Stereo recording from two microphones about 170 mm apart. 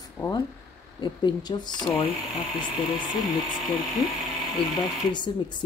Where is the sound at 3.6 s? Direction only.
Centre (ahead or behind).